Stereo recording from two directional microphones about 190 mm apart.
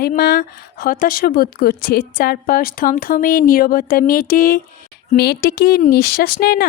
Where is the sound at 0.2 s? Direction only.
55° left (ahead or behind).